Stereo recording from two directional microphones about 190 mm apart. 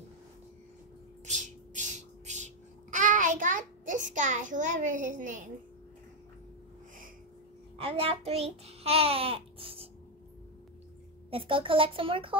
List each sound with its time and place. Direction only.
1.2 s a sound: 40° right (ahead or behind)
7.7 s a child's voice: 30° right (ahead or behind)
11.2 s a child's voice: 30° right (ahead or behind)